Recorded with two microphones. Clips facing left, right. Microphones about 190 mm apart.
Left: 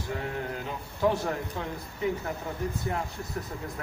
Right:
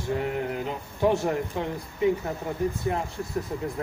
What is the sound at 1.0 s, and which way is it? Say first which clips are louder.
Speech: right 3 dB; 25° right (ahead or behind).